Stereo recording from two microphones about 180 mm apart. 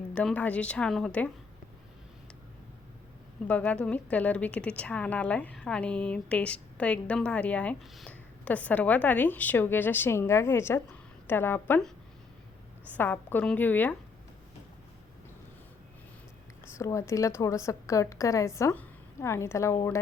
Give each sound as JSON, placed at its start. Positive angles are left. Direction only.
{"t": 0.1, "sound": "a woman's voice", "side_deg": 5}
{"t": 3.4, "sound": "a woman's voice", "side_deg": 5}
{"t": 12.9, "sound": "a woman's voice", "side_deg": 10}
{"t": 16.7, "sound": "a woman's voice", "side_deg": 15}